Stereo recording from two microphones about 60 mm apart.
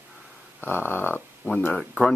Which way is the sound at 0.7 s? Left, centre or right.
Left.